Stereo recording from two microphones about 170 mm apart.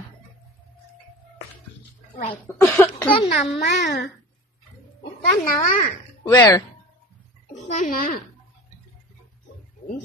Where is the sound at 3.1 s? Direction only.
35° left (ahead or behind).